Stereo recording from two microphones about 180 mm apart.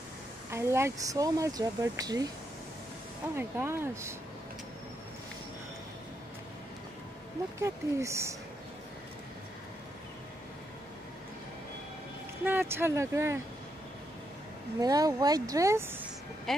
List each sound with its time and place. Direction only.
0.5 s speech: 15° right (ahead or behind)
3.3 s speech: 15° right (ahead or behind)
7.5 s speech: 15° right (ahead or behind)
12.4 s speech: 10° right (ahead or behind)
14.8 s speech: 20° right (ahead or behind)
16.5 s speech: centre (ahead or behind)